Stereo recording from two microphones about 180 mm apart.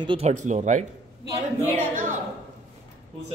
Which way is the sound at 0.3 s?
40° right (ahead or behind).